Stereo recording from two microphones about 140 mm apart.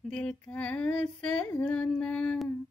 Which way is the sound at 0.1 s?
5° left (ahead or behind).